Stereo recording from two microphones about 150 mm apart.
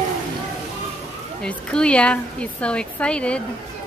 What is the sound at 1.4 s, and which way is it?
Speech, 5° left (ahead or behind).